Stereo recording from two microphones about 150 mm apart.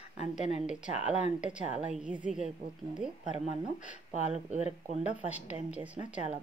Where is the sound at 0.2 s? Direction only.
50° left (ahead or behind).